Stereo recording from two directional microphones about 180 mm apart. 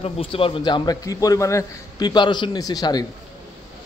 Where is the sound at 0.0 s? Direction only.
30° left (ahead or behind).